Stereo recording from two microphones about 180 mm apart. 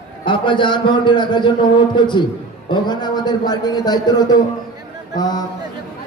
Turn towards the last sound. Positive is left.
turn(degrees=20)  # may be behind; listen again after turning